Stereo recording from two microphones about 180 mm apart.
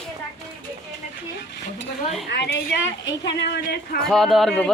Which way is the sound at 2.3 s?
75° left (ahead or behind).